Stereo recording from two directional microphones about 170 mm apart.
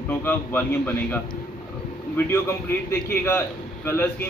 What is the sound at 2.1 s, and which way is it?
A man's voice, 15° left (ahead or behind).